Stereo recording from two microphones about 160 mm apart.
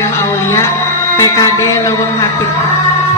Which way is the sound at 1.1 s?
20° left (ahead or behind).